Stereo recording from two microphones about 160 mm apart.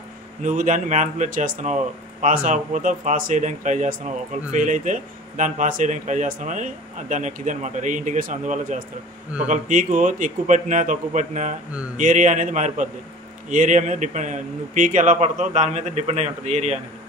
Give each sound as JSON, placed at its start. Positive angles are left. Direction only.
{"t": 0.4, "sound": "speech", "side_deg": -55}